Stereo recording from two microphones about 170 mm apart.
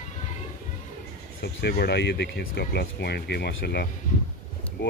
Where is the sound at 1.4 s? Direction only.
70° left (ahead or behind).